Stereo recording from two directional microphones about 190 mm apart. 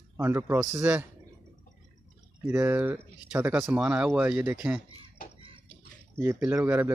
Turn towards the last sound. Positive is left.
turn(degrees=-10)  # may be behind; listen again after turning